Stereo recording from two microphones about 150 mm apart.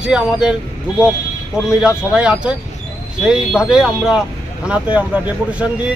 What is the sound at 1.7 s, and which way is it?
Speech, 5° right (ahead or behind).